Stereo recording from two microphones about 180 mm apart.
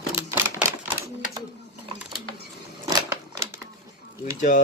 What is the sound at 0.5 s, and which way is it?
Typewriter, 15° right (ahead or behind).